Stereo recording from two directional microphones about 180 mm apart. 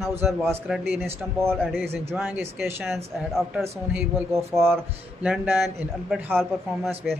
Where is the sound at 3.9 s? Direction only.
15° right (ahead or behind).